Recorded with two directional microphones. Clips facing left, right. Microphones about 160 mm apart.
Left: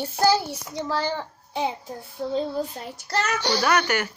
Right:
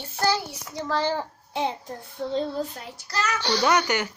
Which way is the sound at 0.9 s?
5° right (ahead or behind).